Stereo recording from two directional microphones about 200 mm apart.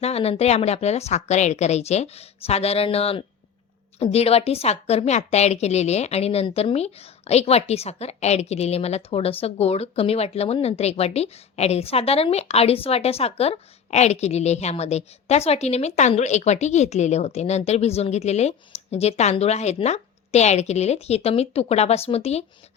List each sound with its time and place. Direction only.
0.0 s a woman's voice: 30° left (ahead or behind)